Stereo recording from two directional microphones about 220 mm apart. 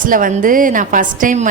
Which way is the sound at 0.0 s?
40° right (ahead or behind).